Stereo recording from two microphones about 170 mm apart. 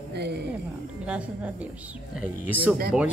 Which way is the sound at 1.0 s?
5° right (ahead or behind).